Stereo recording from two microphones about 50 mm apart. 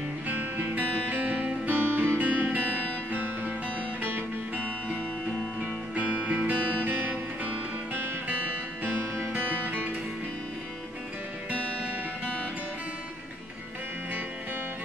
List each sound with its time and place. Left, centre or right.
0.3 s music: right
5.9 s music: right
6.5 s music: left
6.8 s music: right